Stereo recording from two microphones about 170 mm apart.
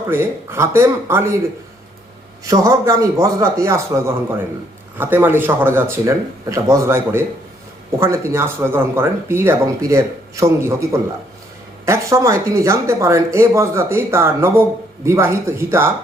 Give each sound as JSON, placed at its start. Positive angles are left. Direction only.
{"t": 0.1, "sound": "speech", "side_deg": -15}
{"t": 2.4, "sound": "speech", "side_deg": -20}
{"t": 11.9, "sound": "speech", "side_deg": -20}